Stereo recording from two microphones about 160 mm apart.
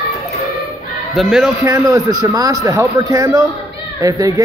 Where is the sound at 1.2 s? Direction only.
Centre (ahead or behind).